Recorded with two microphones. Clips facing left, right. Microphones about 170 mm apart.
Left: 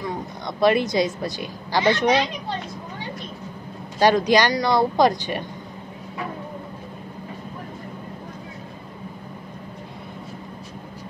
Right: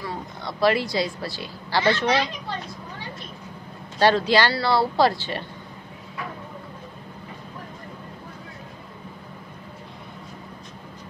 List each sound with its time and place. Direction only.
0.0 s a woman's voice: 20° left (ahead or behind)
4.0 s speech: 15° left (ahead or behind)